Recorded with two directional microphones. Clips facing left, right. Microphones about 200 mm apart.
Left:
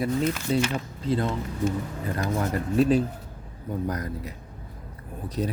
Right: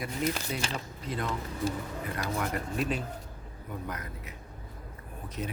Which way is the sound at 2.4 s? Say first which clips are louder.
Left 11 dB; 35° left (ahead or behind).